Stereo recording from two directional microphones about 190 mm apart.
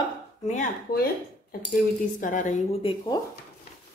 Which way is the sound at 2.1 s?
40° left (ahead or behind).